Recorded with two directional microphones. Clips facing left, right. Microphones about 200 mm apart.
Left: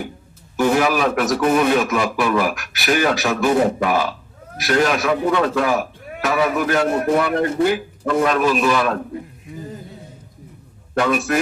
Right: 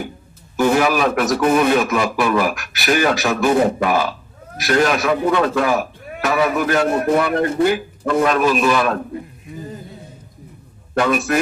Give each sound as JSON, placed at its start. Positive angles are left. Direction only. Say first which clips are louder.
{"t": 0.5, "sound": "a man's voice", "louder": "right 1 dB", "side_deg": -50}
{"t": 10.9, "sound": "a man's voice", "louder": "right 1 dB", "side_deg": -45}